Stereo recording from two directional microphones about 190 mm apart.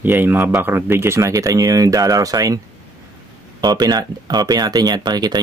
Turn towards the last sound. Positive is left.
turn(degrees=-20)  # may be behind; listen again after turning